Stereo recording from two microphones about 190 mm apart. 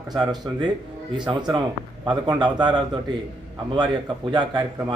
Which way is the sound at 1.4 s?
20° right (ahead or behind).